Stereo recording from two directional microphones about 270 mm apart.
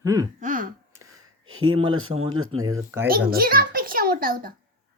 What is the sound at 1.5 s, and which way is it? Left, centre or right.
Speech, right.